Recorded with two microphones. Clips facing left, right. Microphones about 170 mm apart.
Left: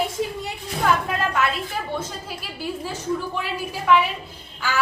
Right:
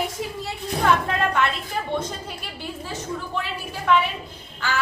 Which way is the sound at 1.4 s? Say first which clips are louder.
Left 1 dB; 5° left (ahead or behind).